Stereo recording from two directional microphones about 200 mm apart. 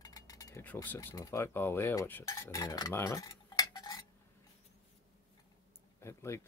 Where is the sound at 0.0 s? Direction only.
15° left (ahead or behind).